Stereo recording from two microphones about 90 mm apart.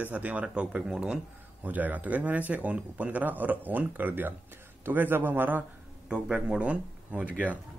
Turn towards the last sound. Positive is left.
turn(degrees=-15)  # may be behind; listen again after turning